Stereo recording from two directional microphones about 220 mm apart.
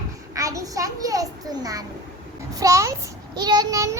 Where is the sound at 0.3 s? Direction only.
15° right (ahead or behind).